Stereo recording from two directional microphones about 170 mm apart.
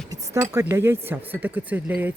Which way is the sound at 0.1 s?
15° right (ahead or behind).